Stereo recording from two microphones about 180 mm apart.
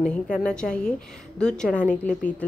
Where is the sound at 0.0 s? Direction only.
5° left (ahead or behind).